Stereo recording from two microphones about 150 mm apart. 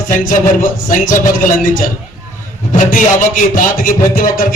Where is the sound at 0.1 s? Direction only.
60° left (ahead or behind).